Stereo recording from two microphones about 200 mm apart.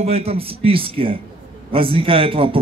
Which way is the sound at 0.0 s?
30° right (ahead or behind).